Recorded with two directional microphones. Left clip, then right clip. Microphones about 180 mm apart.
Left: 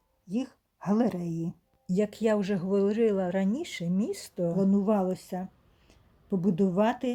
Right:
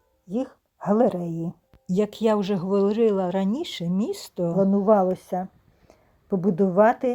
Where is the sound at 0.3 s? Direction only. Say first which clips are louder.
Right 6 dB; 5° right (ahead or behind).